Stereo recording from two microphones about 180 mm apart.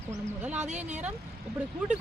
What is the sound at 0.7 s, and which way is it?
Speech, 40° right (ahead or behind).